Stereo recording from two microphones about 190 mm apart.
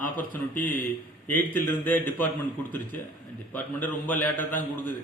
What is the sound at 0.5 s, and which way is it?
Speech, 45° left (ahead or behind).